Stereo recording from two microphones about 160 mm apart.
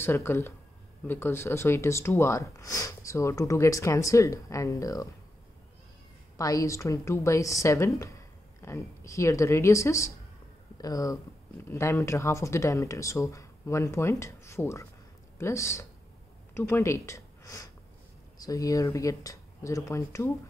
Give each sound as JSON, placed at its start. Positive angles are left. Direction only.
{"t": 0.0, "sound": "speech", "side_deg": 15}
{"t": 6.3, "sound": "speech", "side_deg": 20}